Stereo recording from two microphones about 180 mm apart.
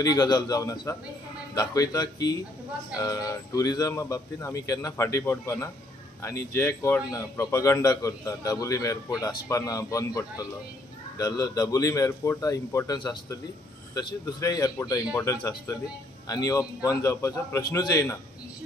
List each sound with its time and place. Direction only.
0.0 s a man's voice: 20° left (ahead or behind)